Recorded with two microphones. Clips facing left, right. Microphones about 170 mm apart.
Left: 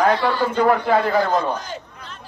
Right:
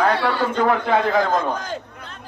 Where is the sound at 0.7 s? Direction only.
Centre (ahead or behind).